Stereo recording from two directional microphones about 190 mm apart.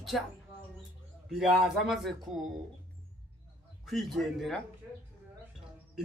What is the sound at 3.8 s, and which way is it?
Speech, centre (ahead or behind).